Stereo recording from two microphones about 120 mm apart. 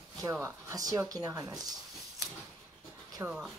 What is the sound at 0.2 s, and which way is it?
Speech, 25° right (ahead or behind).